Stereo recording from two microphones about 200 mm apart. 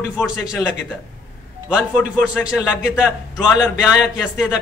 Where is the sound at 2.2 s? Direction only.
5° right (ahead or behind).